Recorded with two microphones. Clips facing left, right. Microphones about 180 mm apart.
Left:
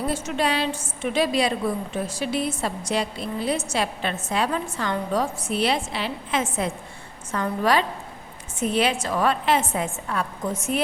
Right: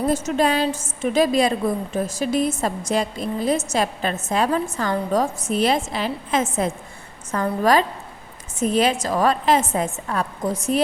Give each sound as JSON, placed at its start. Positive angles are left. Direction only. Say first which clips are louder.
{"t": 0.1, "sound": "a woman's voice", "louder": "right 5 dB", "side_deg": -45}